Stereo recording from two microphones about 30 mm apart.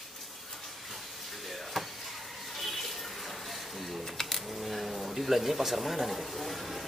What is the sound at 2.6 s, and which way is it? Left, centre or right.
Bathtub, centre.